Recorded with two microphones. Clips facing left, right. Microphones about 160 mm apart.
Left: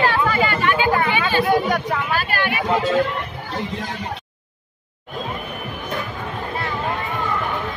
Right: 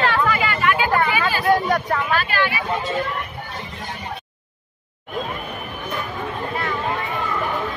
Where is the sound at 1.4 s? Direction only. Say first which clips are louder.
Even; centre (ahead or behind).